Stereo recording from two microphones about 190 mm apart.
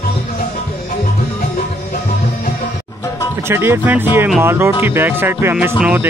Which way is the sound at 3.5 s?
10° right (ahead or behind).